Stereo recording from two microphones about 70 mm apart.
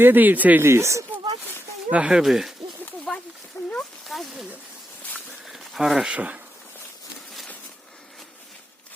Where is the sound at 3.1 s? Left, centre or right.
Centre.